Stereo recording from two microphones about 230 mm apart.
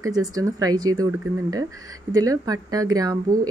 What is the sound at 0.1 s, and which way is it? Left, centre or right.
Speech, centre.